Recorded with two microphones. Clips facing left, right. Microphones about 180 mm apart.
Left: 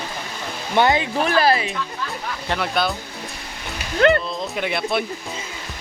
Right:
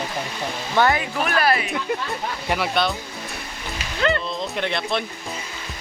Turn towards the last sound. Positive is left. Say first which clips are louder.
# left 2 dB
turn(degrees=5)  # may be behind; listen again after turning